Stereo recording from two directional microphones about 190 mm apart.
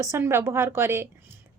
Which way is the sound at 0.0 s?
15° right (ahead or behind).